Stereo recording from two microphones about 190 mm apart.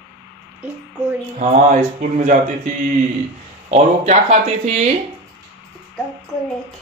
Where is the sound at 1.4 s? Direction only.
40° right (ahead or behind).